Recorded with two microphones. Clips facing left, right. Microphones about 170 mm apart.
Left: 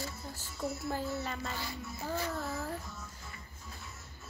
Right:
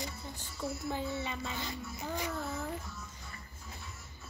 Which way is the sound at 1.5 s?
20° right (ahead or behind).